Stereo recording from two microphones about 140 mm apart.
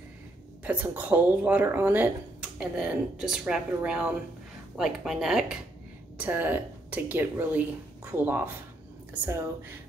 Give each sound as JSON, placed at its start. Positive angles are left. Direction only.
{"t": 0.7, "sound": "a woman's voice", "side_deg": -10}